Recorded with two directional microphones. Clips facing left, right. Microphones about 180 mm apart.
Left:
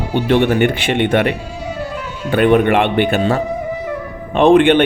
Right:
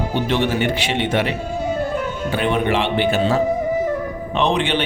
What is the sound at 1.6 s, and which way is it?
Music, 50° right (ahead or behind).